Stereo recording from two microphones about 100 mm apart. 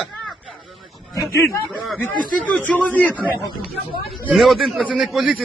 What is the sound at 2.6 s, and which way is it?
Speech, 15° left (ahead or behind).